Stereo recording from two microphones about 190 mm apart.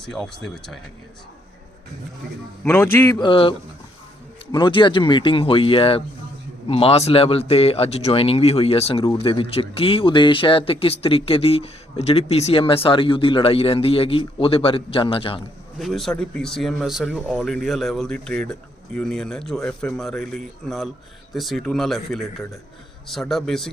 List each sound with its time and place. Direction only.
0.0 s speech: centre (ahead or behind)
2.6 s a man's voice: 10° left (ahead or behind)
3.2 s speech: 25° left (ahead or behind)
4.5 s speech: 25° left (ahead or behind)
15.8 s speech: centre (ahead or behind)